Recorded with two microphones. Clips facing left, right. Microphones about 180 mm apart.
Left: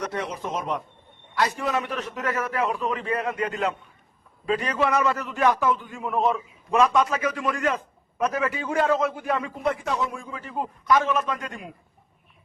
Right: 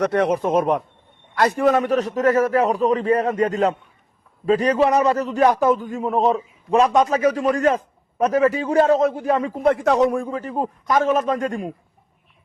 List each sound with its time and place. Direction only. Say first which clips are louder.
0.0 s a man's voice: right 11 dB; 65° right (ahead or behind); by 9.5 s 40° right (ahead or behind)
9.6 s a man's voice: right 10 dB; 70° right (ahead or behind); by 11.7 s 45° right (ahead or behind)